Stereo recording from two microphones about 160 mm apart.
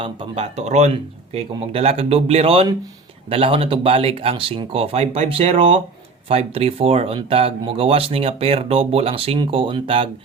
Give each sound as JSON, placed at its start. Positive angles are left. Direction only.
{"t": 0.0, "sound": "speech", "side_deg": -40}